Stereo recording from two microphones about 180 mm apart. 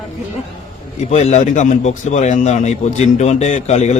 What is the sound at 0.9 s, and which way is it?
A man's voice, 40° left (ahead or behind).